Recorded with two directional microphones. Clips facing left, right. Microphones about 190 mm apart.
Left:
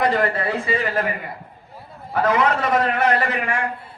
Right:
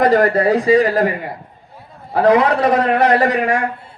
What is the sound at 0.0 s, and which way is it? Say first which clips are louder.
A man's voice: right 7 dB; 45° right (ahead or behind).